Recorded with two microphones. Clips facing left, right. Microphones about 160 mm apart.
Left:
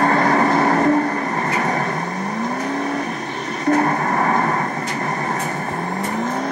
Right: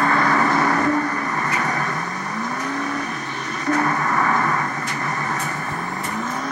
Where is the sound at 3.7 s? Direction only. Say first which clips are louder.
Left 1 dB; 35° left (ahead or behind).